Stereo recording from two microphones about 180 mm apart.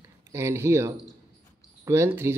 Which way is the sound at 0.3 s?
15° right (ahead or behind).